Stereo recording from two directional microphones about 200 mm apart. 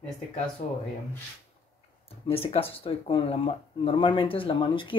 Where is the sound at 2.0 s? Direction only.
30° left (ahead or behind).